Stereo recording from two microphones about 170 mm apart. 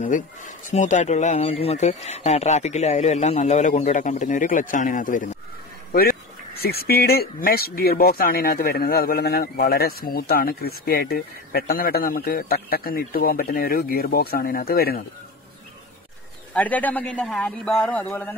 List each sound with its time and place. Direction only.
0.0 s speech: 45° left (ahead or behind)
5.9 s speech: 60° left (ahead or behind)
16.5 s a man's voice: 10° left (ahead or behind)